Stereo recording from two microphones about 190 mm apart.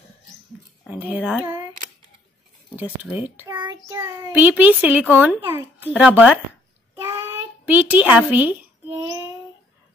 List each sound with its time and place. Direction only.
0.8 s a child's voice: 10° right (ahead or behind)
2.7 s speech: 10° right (ahead or behind)
3.3 s a child's voice: 20° right (ahead or behind)
4.0 s a child's voice: 10° right (ahead or behind)
7.0 s a sound: 15° right (ahead or behind)